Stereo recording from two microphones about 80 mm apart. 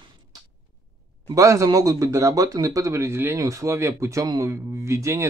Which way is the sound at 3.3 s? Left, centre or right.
Right.